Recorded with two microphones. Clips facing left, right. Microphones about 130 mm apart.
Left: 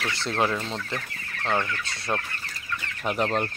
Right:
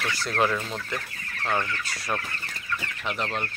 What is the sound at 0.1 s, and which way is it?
Chicken, 25° left (ahead or behind).